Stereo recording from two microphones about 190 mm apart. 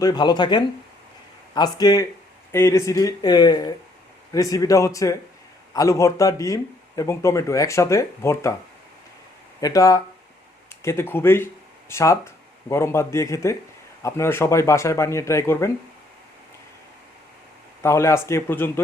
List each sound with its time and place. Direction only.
0.0 s speech: 20° left (ahead or behind)
9.6 s speech: 20° left (ahead or behind)
17.8 s speech: 15° left (ahead or behind)